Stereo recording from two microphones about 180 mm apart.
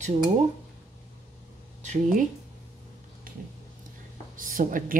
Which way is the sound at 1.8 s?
45° right (ahead or behind).